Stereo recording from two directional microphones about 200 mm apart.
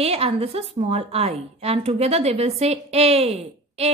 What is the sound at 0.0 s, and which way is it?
A woman's voice, 30° right (ahead or behind).